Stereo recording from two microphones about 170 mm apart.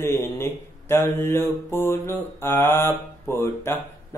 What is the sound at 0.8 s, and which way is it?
Mantra, 15° left (ahead or behind).